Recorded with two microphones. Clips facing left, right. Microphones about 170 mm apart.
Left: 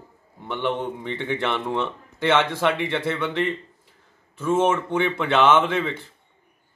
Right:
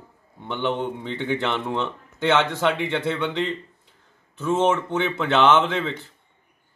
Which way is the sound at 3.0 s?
10° left (ahead or behind).